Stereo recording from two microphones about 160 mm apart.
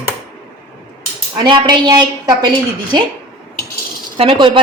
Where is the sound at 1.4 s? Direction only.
30° right (ahead or behind).